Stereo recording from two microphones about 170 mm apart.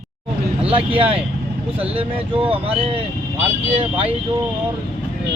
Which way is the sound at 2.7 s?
35° right (ahead or behind).